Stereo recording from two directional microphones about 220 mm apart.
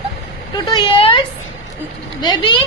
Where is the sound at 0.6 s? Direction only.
20° left (ahead or behind).